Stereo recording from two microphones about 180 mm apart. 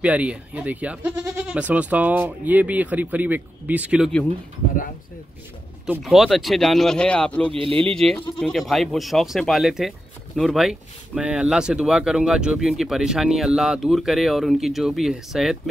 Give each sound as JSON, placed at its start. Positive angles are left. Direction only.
{"t": 0.0, "sound": "speech", "side_deg": -5}
{"t": 5.9, "sound": "speech", "side_deg": 0}
{"t": 7.5, "sound": "speech", "side_deg": -30}
{"t": 7.9, "sound": "speech", "side_deg": 5}